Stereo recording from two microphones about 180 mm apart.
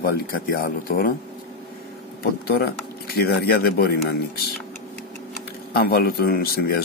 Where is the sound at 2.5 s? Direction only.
60° left (ahead or behind).